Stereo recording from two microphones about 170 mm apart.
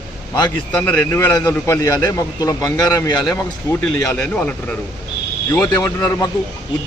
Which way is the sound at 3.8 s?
5° left (ahead or behind).